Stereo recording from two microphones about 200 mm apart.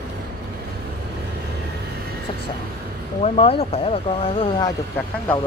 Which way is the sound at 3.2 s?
30° left (ahead or behind).